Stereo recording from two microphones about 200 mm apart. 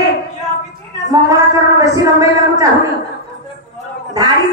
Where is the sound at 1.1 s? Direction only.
15° right (ahead or behind).